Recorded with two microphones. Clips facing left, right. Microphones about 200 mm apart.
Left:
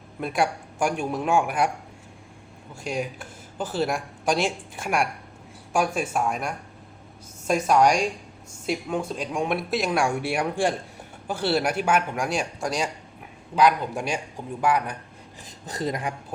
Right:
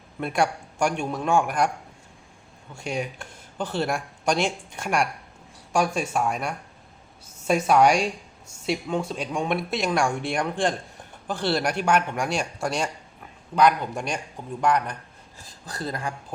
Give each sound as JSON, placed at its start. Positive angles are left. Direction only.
{"t": 0.2, "sound": "speech", "side_deg": 0}
{"t": 2.7, "sound": "speech", "side_deg": 0}
{"t": 15.4, "sound": "speech", "side_deg": 20}